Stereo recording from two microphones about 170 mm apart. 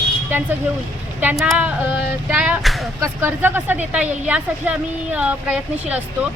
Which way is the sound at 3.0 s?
15° right (ahead or behind).